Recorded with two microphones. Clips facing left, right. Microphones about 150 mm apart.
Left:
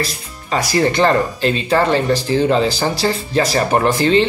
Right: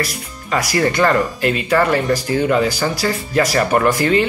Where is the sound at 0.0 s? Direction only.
25° left (ahead or behind).